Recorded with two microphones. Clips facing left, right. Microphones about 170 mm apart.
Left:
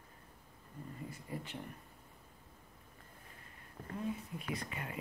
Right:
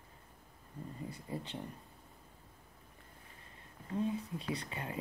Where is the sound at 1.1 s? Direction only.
30° right (ahead or behind).